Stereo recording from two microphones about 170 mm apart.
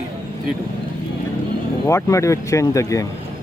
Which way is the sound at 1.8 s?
15° left (ahead or behind).